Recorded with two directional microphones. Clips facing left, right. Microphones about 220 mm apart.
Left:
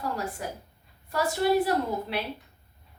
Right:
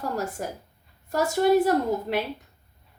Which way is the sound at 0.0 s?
45° right (ahead or behind).